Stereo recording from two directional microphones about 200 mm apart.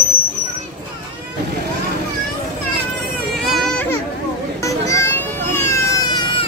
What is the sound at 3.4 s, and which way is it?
Baby cry, centre (ahead or behind).